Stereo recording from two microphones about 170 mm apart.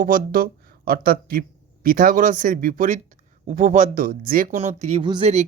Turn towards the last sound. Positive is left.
turn(degrees=-35)  # may be behind; listen again after turning